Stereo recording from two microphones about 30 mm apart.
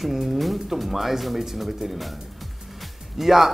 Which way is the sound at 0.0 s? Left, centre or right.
Centre.